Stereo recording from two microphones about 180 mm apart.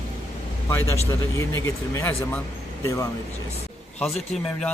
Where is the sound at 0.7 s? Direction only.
15° left (ahead or behind).